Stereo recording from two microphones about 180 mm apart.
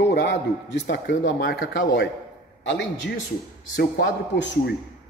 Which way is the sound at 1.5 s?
65° left (ahead or behind).